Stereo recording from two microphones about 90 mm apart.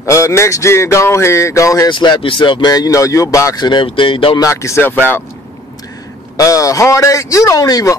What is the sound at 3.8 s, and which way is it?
Speech, 75° left (ahead or behind).